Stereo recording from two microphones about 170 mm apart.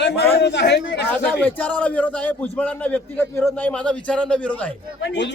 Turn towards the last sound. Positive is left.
turn(degrees=90)